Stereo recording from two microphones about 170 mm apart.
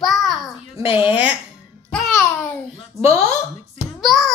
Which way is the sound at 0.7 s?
35° left (ahead or behind).